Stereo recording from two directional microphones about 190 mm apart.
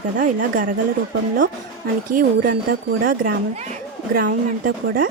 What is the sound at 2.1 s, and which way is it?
Speech, 45° right (ahead or behind).